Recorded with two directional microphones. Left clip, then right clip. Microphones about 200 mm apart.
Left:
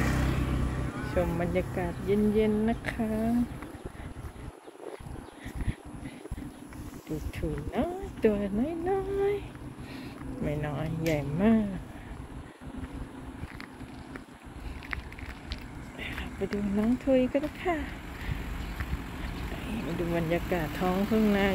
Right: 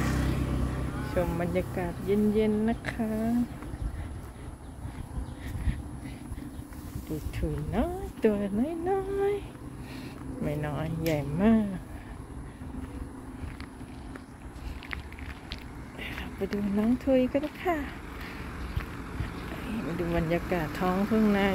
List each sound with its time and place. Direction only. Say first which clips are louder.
0.0 s vehicle: left 1 dB; 30° left (ahead or behind)
1.0 s speech: even; centre (ahead or behind)
7.3 s speech: even; 5° right (ahead or behind)
9.9 s a sound: even; centre (ahead or behind)
11.1 s speech: right 1 dB; 5° right (ahead or behind)
15.5 s a sound: even; 5° right (ahead or behind)
16.4 s speech: right 1 dB; centre (ahead or behind)
20.0 s speech: even; centre (ahead or behind)